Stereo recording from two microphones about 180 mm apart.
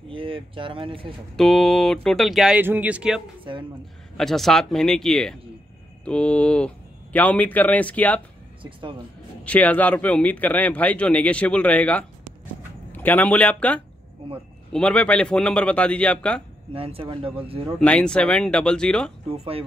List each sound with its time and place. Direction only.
0.1 s speech: 30° right (ahead or behind)
1.3 s speech: centre (ahead or behind)
4.2 s speech: centre (ahead or behind)
8.6 s speech: 25° right (ahead or behind)
9.4 s speech: 10° left (ahead or behind)
16.7 s speech: 30° right (ahead or behind)
17.7 s speech: 5° left (ahead or behind)
19.2 s speech: 30° right (ahead or behind)